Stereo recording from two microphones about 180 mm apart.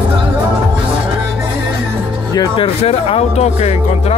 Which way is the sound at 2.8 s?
35° left (ahead or behind).